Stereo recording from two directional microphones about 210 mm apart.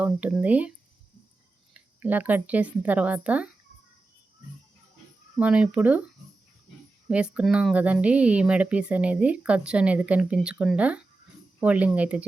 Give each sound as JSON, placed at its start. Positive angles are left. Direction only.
{"t": 0.0, "sound": "speech", "side_deg": -5}
{"t": 1.7, "sound": "speech", "side_deg": -10}
{"t": 5.4, "sound": "speech", "side_deg": -5}
{"t": 7.1, "sound": "speech", "side_deg": -5}